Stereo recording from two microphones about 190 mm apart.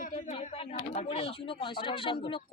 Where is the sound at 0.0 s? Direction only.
40° left (ahead or behind).